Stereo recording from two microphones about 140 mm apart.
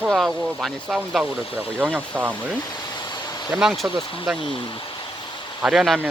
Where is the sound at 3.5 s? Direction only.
Centre (ahead or behind).